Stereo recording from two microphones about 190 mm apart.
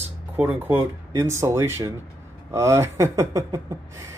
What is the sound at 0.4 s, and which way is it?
Speech, 10° right (ahead or behind).